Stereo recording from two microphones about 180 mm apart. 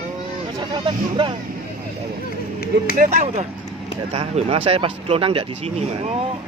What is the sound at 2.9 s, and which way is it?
Speech, 45° right (ahead or behind).